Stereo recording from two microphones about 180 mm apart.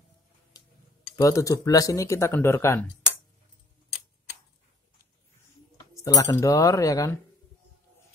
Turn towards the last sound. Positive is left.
turn(degrees=20)  # may be behind; listen again after turning